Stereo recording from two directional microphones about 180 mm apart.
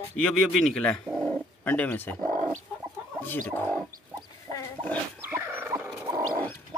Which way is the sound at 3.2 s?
10° left (ahead or behind).